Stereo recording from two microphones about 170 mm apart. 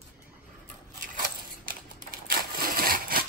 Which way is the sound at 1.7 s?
60° right (ahead or behind).